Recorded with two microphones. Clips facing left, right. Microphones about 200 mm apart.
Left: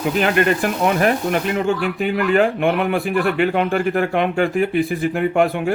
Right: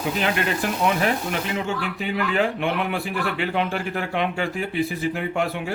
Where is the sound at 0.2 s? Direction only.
55° left (ahead or behind).